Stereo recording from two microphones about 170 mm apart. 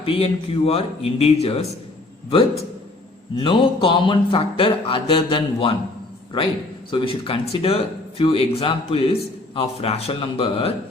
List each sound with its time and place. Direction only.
0.0 s speech: 35° left (ahead or behind)
3.3 s speech: 30° left (ahead or behind)
6.9 s speech: 30° left (ahead or behind)